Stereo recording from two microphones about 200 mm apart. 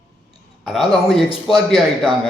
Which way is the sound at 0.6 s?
Centre (ahead or behind).